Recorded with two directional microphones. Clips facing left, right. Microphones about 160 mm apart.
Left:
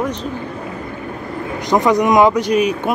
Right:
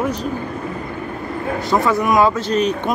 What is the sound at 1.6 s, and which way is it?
Speech, 15° left (ahead or behind).